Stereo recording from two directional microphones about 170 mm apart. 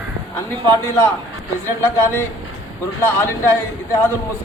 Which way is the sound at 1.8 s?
10° left (ahead or behind).